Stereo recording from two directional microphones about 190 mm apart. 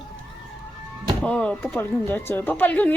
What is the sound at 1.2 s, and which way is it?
Speech, 5° left (ahead or behind).